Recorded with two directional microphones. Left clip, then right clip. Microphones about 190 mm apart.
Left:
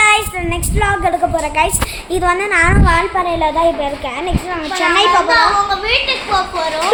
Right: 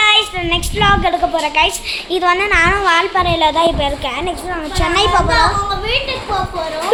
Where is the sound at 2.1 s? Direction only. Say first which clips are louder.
Even; 10° left (ahead or behind).